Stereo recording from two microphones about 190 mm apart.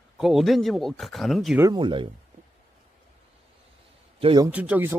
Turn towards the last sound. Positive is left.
turn(degrees=-10)  # may be behind; listen again after turning